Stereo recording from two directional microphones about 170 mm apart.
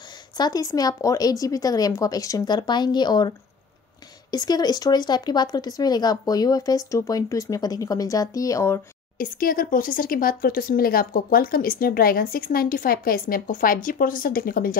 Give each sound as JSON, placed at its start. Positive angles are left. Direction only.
{"t": 0.4, "sound": "speech", "side_deg": 20}
{"t": 9.2, "sound": "speech", "side_deg": 55}